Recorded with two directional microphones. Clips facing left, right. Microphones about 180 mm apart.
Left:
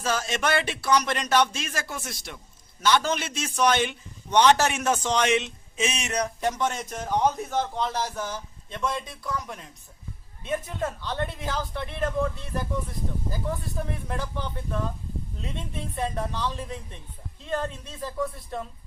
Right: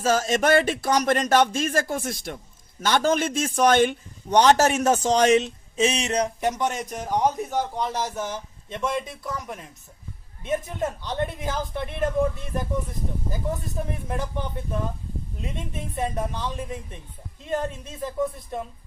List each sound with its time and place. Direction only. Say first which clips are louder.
0.0 s speech: right 6 dB; 45° right (ahead or behind); by 9.0 s 20° right (ahead or behind)
10.4 s a woman's voice: right 3 dB; 20° right (ahead or behind)
14.1 s a woman's voice: right 3 dB; 20° right (ahead or behind)